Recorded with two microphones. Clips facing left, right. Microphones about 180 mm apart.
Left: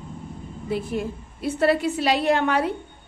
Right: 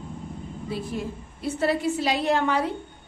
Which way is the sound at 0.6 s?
60° left (ahead or behind).